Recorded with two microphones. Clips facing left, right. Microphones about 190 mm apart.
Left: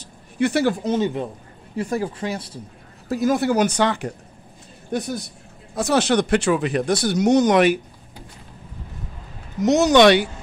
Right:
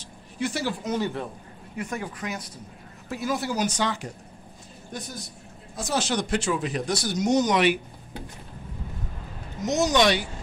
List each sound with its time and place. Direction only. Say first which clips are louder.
0.4 s speech: left 9 dB; 65° left (ahead or behind)
0.8 s a man's voice: left 6 dB; 20° left (ahead or behind)
1.8 s speech: left 8 dB; 35° left (ahead or behind)
3.1 s speech: left 9 dB; 40° left (ahead or behind)
3.3 s speech: left 8 dB; 60° left (ahead or behind)
9.7 s speech: left 8 dB; 70° left (ahead or behind)